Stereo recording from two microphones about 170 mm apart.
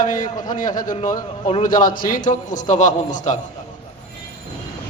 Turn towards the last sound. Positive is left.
turn(degrees=50)  # may be behind; listen again after turning